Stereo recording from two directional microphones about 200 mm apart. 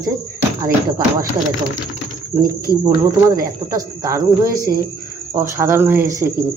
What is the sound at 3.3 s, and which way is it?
Speech, 15° right (ahead or behind).